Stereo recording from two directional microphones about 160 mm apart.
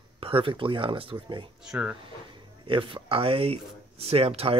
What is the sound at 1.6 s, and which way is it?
Speech, 5° right (ahead or behind).